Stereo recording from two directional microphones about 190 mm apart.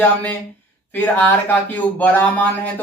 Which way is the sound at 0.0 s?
10° left (ahead or behind).